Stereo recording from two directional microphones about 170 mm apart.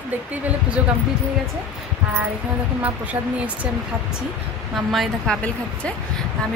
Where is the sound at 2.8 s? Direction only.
10° right (ahead or behind).